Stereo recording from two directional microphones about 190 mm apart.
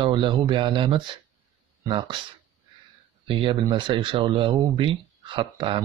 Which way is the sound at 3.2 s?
25° right (ahead or behind).